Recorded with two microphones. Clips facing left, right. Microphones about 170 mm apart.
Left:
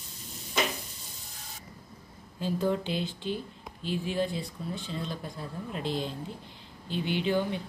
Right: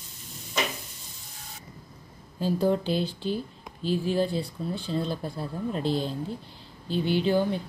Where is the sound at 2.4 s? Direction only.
35° right (ahead or behind).